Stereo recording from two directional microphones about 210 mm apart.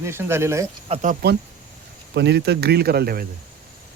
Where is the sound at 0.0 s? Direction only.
10° right (ahead or behind).